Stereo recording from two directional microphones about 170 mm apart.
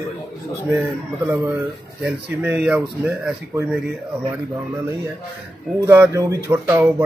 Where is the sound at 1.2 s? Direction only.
15° right (ahead or behind).